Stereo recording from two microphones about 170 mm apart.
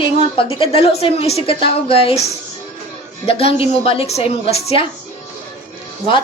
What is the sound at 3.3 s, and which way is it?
A woman's voice, 35° left (ahead or behind).